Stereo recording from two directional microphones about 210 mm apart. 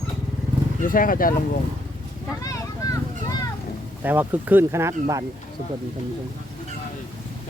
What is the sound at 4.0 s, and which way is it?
Speech, 10° right (ahead or behind).